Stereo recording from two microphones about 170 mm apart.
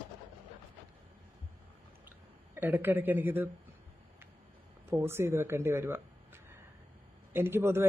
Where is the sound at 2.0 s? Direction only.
10° right (ahead or behind).